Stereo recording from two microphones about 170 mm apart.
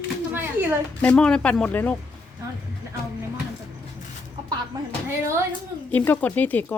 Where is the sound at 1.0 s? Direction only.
5° left (ahead or behind).